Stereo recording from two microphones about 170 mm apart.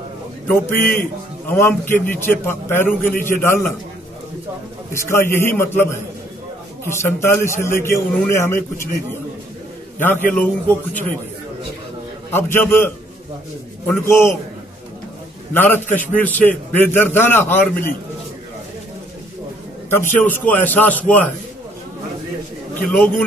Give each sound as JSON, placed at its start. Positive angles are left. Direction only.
{"t": 1.5, "sound": "a man's voice", "side_deg": 10}
{"t": 4.9, "sound": "a man's voice", "side_deg": 15}
{"t": 9.9, "sound": "a man's voice", "side_deg": 10}
{"t": 12.3, "sound": "a man's voice", "side_deg": 15}
{"t": 15.5, "sound": "a man's voice", "side_deg": 10}
{"t": 19.9, "sound": "a man's voice", "side_deg": 15}
{"t": 22.8, "sound": "a man's voice", "side_deg": 10}